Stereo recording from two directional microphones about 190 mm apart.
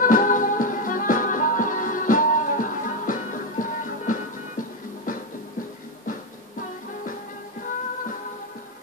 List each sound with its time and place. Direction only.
0.0 s music: 45° left (ahead or behind)